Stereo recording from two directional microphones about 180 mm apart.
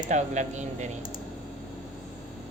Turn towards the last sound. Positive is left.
turn(degrees=-40)  # may be behind; listen again after turning